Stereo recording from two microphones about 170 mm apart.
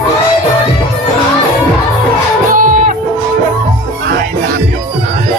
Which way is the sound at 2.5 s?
50° right (ahead or behind).